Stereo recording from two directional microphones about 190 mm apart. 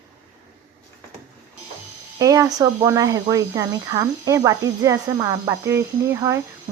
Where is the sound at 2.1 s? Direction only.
20° right (ahead or behind).